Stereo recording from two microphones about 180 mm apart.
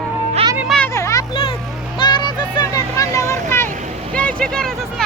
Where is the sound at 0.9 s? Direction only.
15° left (ahead or behind).